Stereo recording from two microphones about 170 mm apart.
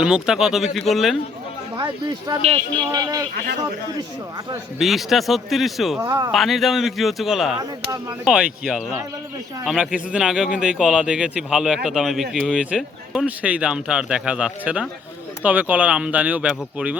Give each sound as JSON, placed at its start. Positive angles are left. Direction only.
{"t": 0.0, "sound": "a man's voice", "side_deg": -5}
{"t": 1.7, "sound": "speech", "side_deg": -25}
{"t": 4.8, "sound": "a man's voice", "side_deg": 0}
{"t": 6.0, "sound": "speech", "side_deg": -20}
{"t": 6.3, "sound": "a man's voice", "side_deg": 0}